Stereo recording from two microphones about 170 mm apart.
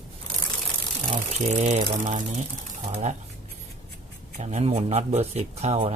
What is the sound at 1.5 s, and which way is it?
Speech, 45° right (ahead or behind).